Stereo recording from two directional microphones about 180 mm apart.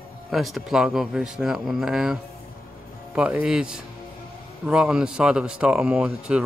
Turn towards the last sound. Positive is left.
turn(degrees=-5)  # may be behind; listen again after turning